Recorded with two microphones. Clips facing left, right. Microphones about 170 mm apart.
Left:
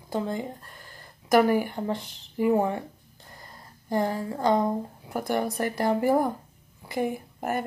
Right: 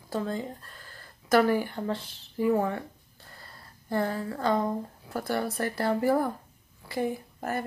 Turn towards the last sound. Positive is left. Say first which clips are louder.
# left 3 dB
turn(degrees=15)  # may be behind; listen again after turning